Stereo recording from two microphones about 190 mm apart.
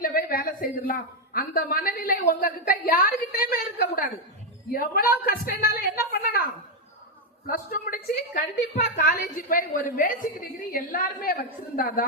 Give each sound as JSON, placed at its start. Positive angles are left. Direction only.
{"t": 0.0, "sound": "a man's voice", "side_deg": 50}
{"t": 7.4, "sound": "a man's voice", "side_deg": 50}